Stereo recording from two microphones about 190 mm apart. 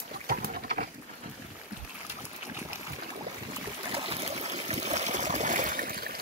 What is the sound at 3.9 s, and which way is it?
Trickle, 30° right (ahead or behind).